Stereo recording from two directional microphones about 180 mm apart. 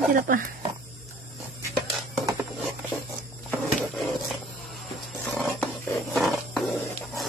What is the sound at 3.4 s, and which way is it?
Roaring cats, centre (ahead or behind).